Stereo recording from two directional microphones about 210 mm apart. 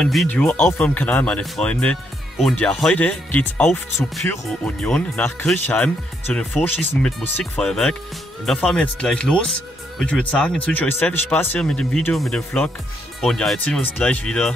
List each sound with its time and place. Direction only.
0.0 s speech: centre (ahead or behind)